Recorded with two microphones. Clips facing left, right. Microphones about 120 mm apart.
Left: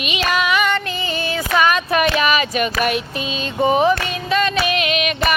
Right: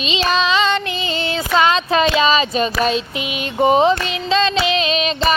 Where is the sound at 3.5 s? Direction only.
20° right (ahead or behind).